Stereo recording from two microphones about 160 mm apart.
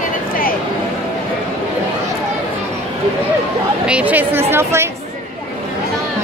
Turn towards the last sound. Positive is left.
turn(degrees=-15)  # may be behind; listen again after turning